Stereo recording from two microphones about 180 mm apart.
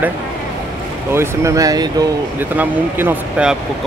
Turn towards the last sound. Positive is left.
turn(degrees=-10)  # may be behind; listen again after turning